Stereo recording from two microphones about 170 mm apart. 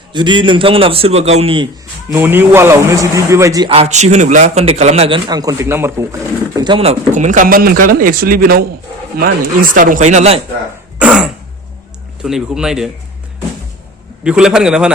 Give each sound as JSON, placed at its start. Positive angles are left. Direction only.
{"t": 0.1, "sound": "a man's voice", "side_deg": -25}
{"t": 2.1, "sound": "a man's voice", "side_deg": -10}
{"t": 3.7, "sound": "a man's voice", "side_deg": -40}
{"t": 6.6, "sound": "a man's voice", "side_deg": -30}
{"t": 7.1, "sound": "speech", "side_deg": -45}
{"t": 11.0, "sound": "throat clearing", "side_deg": -5}
{"t": 12.2, "sound": "speech", "side_deg": -5}
{"t": 14.3, "sound": "speech", "side_deg": -5}